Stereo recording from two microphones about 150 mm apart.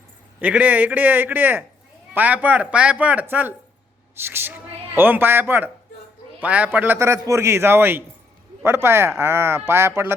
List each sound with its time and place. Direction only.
0.4 s a woman's voice: 10° right (ahead or behind)